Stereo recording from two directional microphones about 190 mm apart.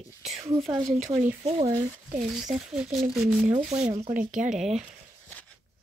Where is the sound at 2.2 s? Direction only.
Centre (ahead or behind).